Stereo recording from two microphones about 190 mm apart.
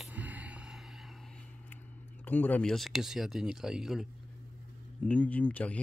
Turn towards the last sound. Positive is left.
turn(degrees=10)  # may be behind; listen again after turning